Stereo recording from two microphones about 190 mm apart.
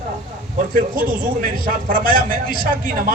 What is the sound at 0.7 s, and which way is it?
A man's voice, 45° right (ahead or behind).